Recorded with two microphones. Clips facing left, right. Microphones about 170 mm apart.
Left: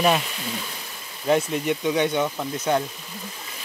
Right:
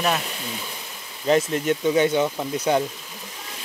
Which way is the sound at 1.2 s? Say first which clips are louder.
Right 1 dB; centre (ahead or behind).